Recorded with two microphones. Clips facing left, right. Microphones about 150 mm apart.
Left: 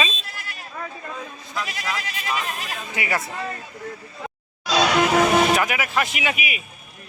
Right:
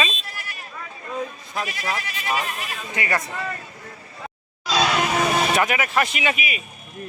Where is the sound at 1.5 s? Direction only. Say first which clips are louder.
Right 1 dB; 45° right (ahead or behind).